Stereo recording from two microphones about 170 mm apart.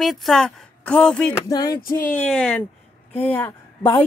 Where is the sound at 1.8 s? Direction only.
55° left (ahead or behind).